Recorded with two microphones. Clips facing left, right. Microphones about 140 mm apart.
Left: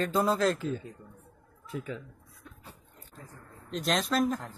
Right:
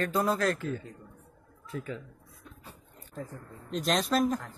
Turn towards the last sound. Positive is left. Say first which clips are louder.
# right 1 dB
turn(degrees=0)  # may be behind; listen again after turning